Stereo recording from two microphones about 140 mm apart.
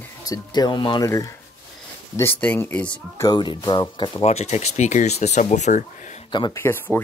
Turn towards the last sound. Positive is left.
turn(degrees=15)  # may be behind; listen again after turning